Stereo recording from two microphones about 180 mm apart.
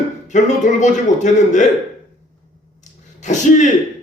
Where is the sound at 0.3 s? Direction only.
40° left (ahead or behind).